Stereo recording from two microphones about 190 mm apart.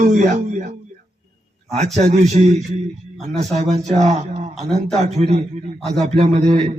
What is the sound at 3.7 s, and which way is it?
Speech, 35° right (ahead or behind).